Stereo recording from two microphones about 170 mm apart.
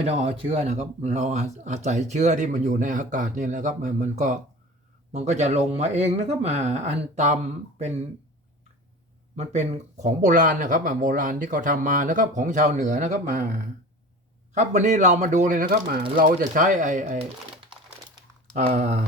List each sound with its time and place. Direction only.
0.0 s speech: 35° right (ahead or behind)
9.3 s speech: 40° right (ahead or behind)
14.5 s speech: 45° right (ahead or behind)
18.7 s speech: 40° right (ahead or behind)